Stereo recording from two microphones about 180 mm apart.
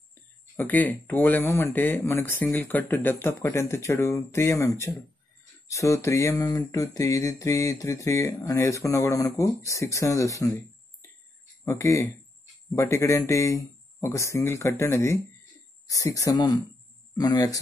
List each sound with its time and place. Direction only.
0.1 s speech: 10° left (ahead or behind)
11.6 s speech: 15° left (ahead or behind)